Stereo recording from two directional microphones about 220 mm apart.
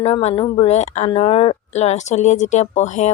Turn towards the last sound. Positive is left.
turn(degrees=35)  # may be behind; listen again after turning